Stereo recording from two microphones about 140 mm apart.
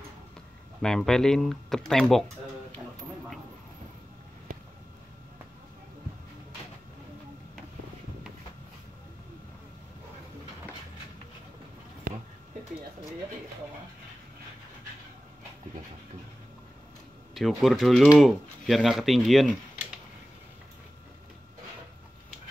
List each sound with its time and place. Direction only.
0.8 s speech: 5° left (ahead or behind)
12.1 s a sound: 90° right
17.3 s speech: centre (ahead or behind)